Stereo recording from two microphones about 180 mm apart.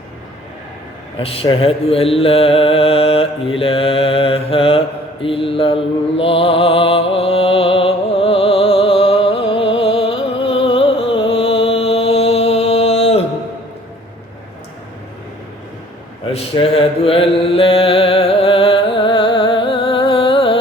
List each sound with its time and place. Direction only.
1.1 s mantra: 30° left (ahead or behind)
16.3 s mantra: 30° left (ahead or behind)